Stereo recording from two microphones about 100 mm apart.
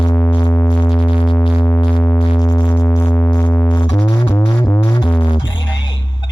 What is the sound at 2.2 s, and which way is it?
Music, 40° left (ahead or behind).